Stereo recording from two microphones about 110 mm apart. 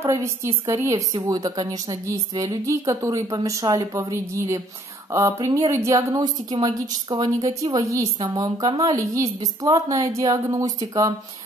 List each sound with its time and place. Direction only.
0.0 s a woman's voice: 25° right (ahead or behind)